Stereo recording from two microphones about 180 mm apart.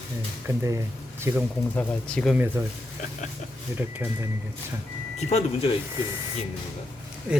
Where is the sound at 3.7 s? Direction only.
10° right (ahead or behind).